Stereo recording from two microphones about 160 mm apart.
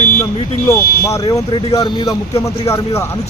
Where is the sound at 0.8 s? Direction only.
65° left (ahead or behind).